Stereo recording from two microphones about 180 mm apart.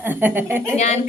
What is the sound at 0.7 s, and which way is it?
Speech, 40° left (ahead or behind).